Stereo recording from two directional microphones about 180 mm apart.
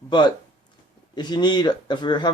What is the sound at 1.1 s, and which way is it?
Speech, 25° left (ahead or behind).